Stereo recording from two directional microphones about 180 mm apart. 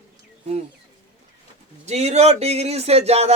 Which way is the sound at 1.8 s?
35° right (ahead or behind).